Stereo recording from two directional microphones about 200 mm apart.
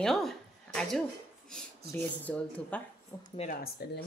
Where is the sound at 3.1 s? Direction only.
15° left (ahead or behind).